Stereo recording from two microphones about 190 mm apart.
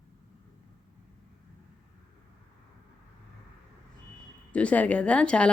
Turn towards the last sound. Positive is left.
turn(degrees=5)  # may be behind; listen again after turning